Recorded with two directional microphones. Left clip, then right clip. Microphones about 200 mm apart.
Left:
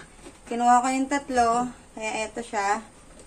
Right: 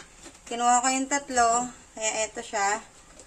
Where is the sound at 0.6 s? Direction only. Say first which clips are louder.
Left 3 dB; 10° right (ahead or behind).